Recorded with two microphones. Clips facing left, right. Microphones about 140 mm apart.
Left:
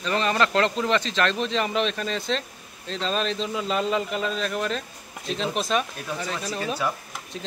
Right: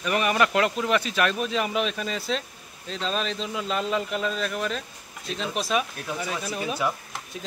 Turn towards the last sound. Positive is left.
turn(degrees=-10)  # may be behind; listen again after turning